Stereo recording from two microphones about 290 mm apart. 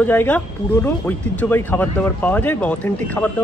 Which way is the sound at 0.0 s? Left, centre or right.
Centre.